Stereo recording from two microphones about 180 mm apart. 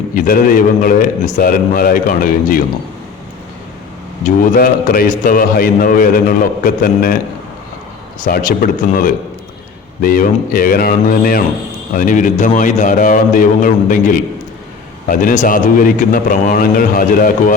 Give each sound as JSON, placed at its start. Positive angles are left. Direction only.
{"t": 0.1, "sound": "a man's voice", "side_deg": 50}
{"t": 4.5, "sound": "a man's voice", "side_deg": 55}
{"t": 8.2, "sound": "a man's voice", "side_deg": 50}